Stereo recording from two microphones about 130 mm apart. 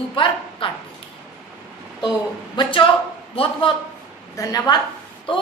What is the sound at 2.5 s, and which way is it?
Speech, 40° left (ahead or behind).